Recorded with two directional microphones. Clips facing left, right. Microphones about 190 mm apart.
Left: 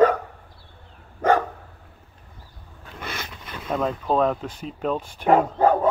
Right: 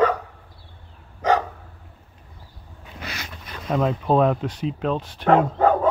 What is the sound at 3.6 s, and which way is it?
Speech, centre (ahead or behind).